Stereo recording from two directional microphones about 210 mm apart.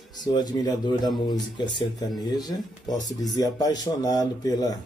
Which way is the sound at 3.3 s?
20° left (ahead or behind).